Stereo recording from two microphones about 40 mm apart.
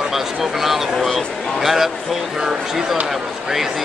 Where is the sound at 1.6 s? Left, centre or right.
Centre.